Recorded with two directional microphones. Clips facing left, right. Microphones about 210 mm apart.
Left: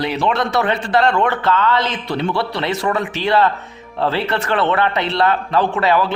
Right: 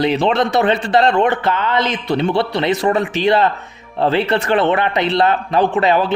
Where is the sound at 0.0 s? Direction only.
20° right (ahead or behind).